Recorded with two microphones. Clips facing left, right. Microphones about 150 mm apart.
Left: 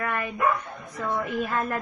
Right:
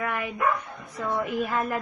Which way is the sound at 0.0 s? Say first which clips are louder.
Left 1 dB; 15° right (ahead or behind).